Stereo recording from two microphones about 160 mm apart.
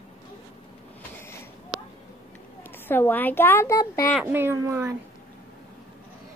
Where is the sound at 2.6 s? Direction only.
15° left (ahead or behind).